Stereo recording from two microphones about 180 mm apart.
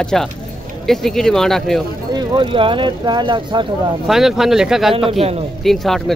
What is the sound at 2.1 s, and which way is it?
Speech, 30° right (ahead or behind).